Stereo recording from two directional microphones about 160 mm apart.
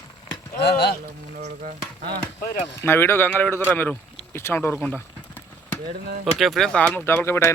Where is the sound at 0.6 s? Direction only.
90° left.